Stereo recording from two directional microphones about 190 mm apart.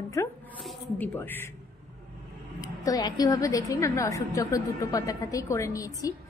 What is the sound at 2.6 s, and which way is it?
A woman's voice, 20° left (ahead or behind).